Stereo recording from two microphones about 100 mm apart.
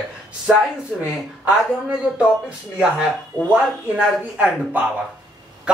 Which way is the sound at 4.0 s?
10° right (ahead or behind).